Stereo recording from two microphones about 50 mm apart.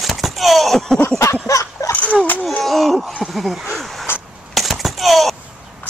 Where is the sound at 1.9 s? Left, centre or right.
Left.